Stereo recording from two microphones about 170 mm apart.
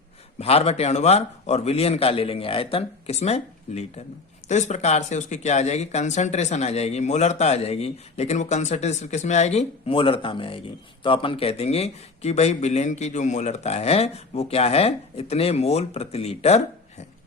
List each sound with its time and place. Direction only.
0.3 s speech: 35° left (ahead or behind)